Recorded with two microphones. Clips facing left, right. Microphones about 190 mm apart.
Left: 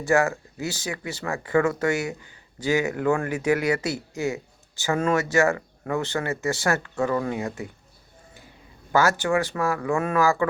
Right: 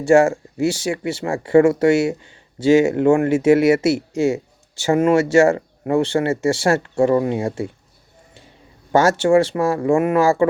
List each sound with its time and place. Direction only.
0.1 s speech: 25° right (ahead or behind)
8.9 s speech: 30° right (ahead or behind)